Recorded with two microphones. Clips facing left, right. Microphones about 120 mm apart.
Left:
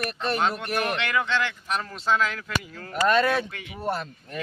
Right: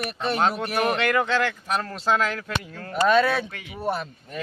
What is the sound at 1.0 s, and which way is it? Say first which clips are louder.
Speech: right 4 dB; 45° right (ahead or behind).